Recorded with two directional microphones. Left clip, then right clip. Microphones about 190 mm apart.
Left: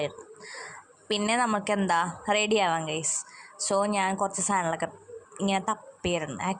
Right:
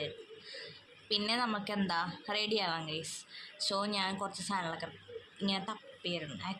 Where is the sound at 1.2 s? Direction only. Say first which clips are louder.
Left 11 dB; 40° left (ahead or behind).